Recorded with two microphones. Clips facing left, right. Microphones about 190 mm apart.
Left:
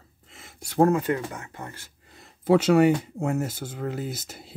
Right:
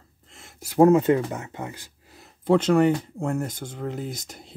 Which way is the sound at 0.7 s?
20° right (ahead or behind).